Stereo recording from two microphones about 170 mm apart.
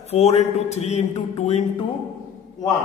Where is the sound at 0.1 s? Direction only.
40° left (ahead or behind).